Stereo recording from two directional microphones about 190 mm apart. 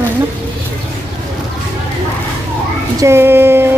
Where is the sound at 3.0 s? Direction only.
15° right (ahead or behind).